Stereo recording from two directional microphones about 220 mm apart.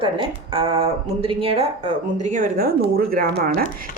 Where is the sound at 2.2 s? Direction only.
35° right (ahead or behind).